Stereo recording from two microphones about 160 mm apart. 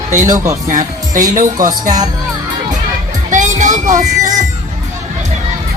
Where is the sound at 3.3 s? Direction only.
50° right (ahead or behind).